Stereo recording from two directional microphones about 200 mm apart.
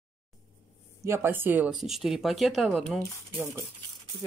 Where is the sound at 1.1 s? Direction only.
10° right (ahead or behind).